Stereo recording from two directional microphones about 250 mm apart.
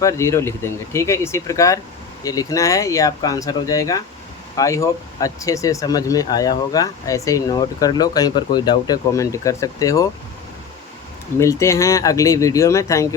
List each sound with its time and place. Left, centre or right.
0.0 s speech: centre
11.3 s speech: centre